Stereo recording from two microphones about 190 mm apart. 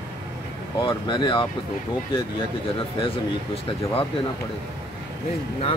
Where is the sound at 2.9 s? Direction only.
30° left (ahead or behind).